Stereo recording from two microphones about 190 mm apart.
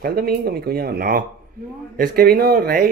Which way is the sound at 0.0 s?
55° right (ahead or behind).